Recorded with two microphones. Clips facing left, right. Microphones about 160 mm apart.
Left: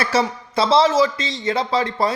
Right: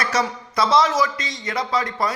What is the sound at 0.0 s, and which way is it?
A man's voice, 30° left (ahead or behind).